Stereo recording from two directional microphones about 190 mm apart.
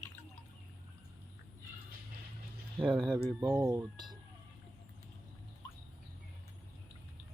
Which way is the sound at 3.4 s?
20° right (ahead or behind).